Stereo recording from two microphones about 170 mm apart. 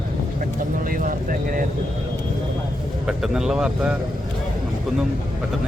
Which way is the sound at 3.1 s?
5° right (ahead or behind).